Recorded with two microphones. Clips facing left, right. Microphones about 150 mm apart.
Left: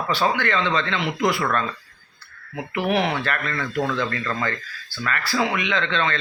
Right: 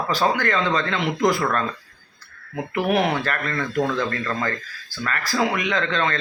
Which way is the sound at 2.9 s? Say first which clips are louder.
Right 1 dB; 45° right (ahead or behind).